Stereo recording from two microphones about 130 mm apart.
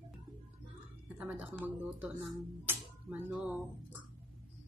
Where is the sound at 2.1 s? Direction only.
Centre (ahead or behind).